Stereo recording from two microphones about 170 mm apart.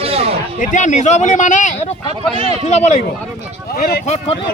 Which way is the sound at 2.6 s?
40° left (ahead or behind).